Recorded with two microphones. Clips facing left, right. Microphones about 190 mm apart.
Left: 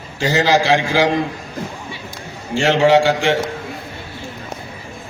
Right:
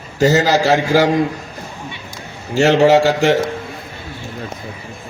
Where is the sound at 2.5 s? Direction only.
40° right (ahead or behind).